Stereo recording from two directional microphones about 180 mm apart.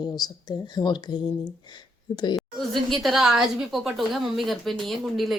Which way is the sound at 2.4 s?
Centre (ahead or behind).